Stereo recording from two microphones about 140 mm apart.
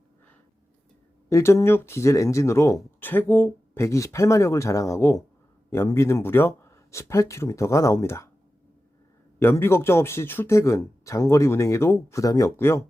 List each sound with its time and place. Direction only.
1.3 s speech: 20° left (ahead or behind)
9.4 s speech: 15° left (ahead or behind)